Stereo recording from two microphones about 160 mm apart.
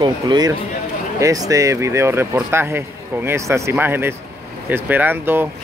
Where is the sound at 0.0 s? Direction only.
25° right (ahead or behind).